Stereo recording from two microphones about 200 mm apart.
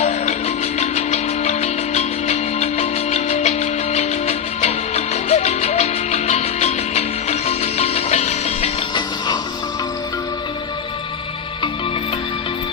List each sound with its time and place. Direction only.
0.8 s music: 35° left (ahead or behind)